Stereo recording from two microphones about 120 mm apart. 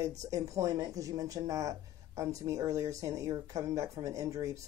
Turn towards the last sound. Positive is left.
turn(degrees=-25)  # may be behind; listen again after turning